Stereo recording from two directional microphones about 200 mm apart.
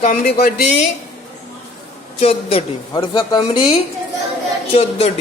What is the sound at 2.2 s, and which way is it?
A woman's voice, 30° left (ahead or behind).